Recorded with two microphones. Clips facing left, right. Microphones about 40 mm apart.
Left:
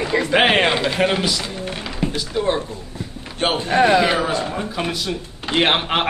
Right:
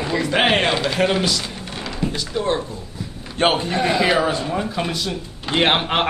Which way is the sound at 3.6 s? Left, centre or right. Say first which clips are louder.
Left 5 dB; left.